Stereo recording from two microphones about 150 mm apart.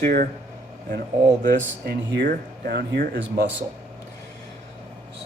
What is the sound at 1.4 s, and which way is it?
Speech, 90° right.